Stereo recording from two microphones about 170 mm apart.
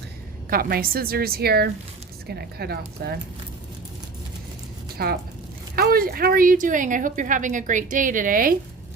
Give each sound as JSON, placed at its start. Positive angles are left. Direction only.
{"t": 0.5, "sound": "a woman's voice", "side_deg": -60}
{"t": 5.0, "sound": "a woman's voice", "side_deg": -65}